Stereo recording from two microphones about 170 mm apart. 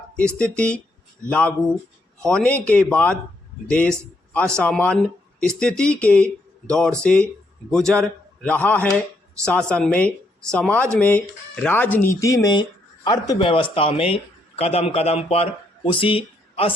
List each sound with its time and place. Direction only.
0.5 s speech: 5° left (ahead or behind); by 16.7 s 30° left (ahead or behind)